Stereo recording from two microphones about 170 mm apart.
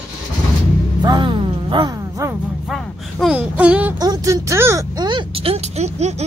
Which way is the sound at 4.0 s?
20° right (ahead or behind).